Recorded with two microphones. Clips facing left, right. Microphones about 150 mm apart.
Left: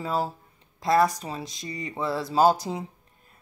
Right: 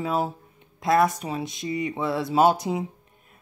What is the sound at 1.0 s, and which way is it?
Speech, 20° right (ahead or behind).